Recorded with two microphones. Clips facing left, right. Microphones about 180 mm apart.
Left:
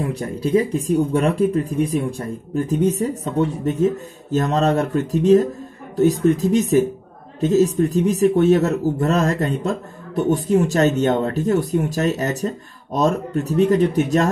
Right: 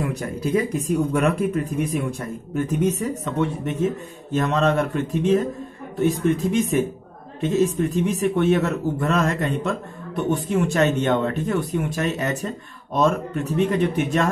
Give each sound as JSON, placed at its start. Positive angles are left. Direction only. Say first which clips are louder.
{"t": 0.0, "sound": "a man's voice", "louder": "left 2 dB", "side_deg": 30}